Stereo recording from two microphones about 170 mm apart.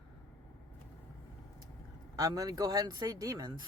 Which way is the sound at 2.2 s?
20° right (ahead or behind).